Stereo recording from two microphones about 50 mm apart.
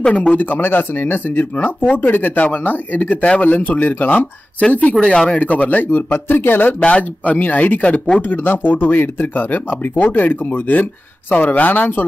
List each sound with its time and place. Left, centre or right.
0.3 s speech: left
5.0 s speech: left
6.8 s speech: left